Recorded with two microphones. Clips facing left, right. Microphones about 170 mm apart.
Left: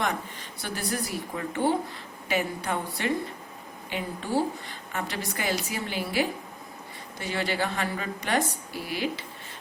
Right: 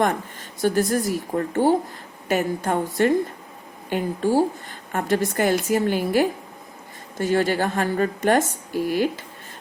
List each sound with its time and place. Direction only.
0.6 s a woman's voice: 45° right (ahead or behind)